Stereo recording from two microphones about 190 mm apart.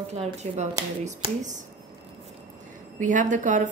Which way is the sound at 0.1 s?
35° right (ahead or behind).